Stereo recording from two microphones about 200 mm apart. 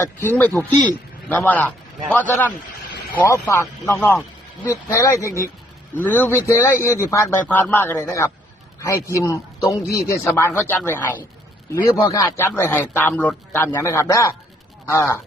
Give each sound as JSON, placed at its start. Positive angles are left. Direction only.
{"t": 0.0, "sound": "a man's voice", "side_deg": 15}